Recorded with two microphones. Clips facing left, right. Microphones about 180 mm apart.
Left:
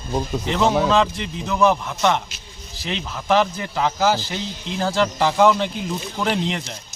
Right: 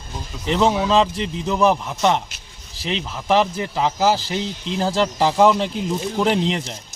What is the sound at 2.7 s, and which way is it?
A man's voice, 30° right (ahead or behind).